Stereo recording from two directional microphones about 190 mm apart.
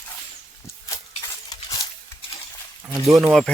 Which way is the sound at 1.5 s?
20° left (ahead or behind).